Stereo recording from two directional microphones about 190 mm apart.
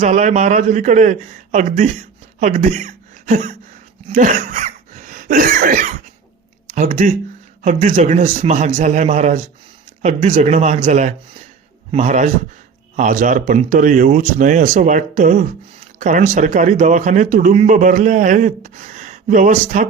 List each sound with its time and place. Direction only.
0.0 s speech: 40° right (ahead or behind)
4.1 s cough: 45° right (ahead or behind)
6.7 s speech: 40° right (ahead or behind)